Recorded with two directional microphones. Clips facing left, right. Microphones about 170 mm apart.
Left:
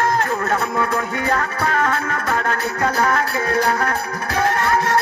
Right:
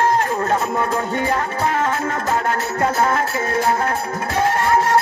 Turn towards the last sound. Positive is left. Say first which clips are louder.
# right 2 dB
turn(degrees=-25)  # may be behind; listen again after turning